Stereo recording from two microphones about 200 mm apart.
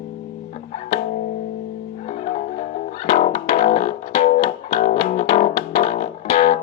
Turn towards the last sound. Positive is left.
turn(degrees=35)  # may be behind; listen again after turning